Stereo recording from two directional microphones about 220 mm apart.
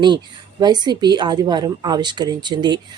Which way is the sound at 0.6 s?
20° right (ahead or behind).